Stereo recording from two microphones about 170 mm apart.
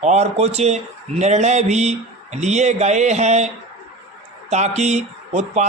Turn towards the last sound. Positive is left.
turn(degrees=-40)  # may be behind; listen again after turning